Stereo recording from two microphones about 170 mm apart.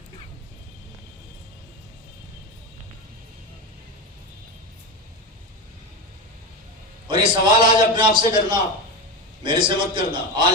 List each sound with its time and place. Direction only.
7.1 s a man's voice: 30° right (ahead or behind)